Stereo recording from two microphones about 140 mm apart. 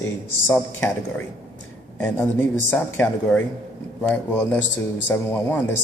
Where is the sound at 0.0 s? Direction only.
15° left (ahead or behind).